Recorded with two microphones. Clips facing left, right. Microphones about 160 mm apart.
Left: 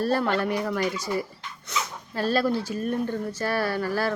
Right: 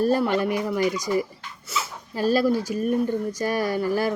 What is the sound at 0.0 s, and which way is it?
Speech, 15° right (ahead or behind).